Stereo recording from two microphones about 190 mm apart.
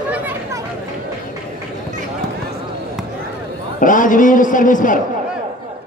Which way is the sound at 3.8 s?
45° left (ahead or behind).